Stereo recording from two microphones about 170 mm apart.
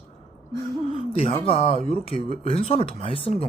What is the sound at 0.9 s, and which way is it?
Speech, 35° left (ahead or behind).